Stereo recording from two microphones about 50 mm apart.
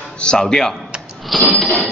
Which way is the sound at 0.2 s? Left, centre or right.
Centre.